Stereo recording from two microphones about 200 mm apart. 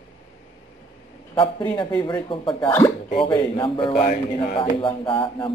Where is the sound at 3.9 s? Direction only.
45° left (ahead or behind).